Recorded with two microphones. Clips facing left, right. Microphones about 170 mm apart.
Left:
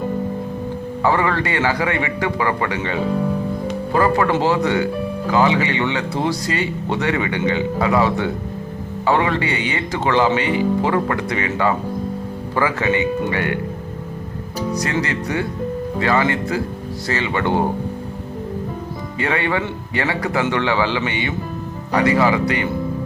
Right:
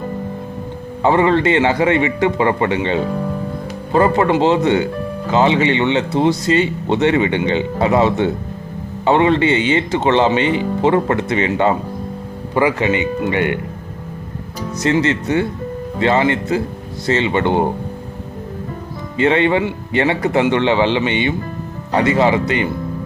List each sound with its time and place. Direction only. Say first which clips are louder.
1.0 s speech: right 6 dB; 20° right (ahead or behind)
15.0 s speech: right 5 dB; 25° right (ahead or behind)
19.2 s speech: right 7 dB; 20° right (ahead or behind)